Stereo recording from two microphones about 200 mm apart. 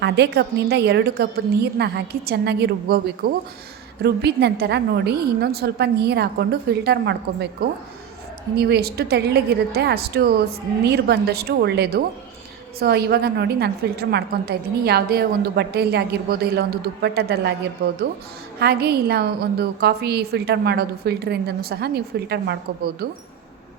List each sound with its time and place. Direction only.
0.0 s a woman's voice: 55° right (ahead or behind)
18.6 s a woman's voice: 55° right (ahead or behind)